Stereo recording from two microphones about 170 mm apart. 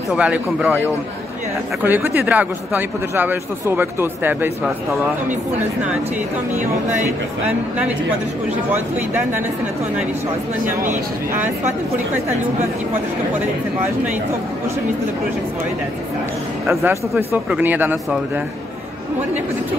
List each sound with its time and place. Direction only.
0.1 s speech: 5° right (ahead or behind)
8.7 s speech: 10° right (ahead or behind)
10.6 s speech: 50° right (ahead or behind)
16.6 s speech: 15° right (ahead or behind)